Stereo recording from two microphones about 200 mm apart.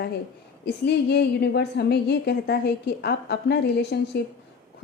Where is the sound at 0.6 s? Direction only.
55° left (ahead or behind).